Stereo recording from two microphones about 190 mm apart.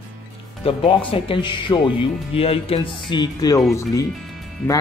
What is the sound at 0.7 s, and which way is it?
Speech, 30° left (ahead or behind).